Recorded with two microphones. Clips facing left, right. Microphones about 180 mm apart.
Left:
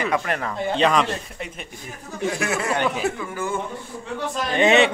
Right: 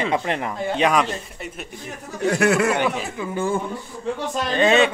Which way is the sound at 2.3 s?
65° right (ahead or behind).